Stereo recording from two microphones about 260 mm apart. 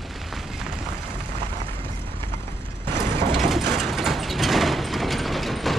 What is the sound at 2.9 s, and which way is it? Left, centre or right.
Mechanisms, right.